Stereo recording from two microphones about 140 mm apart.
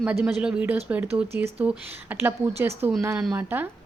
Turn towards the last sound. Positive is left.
turn(degrees=-15)  # may be behind; listen again after turning